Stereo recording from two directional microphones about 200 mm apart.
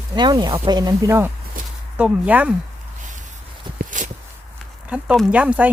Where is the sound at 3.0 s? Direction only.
40° right (ahead or behind).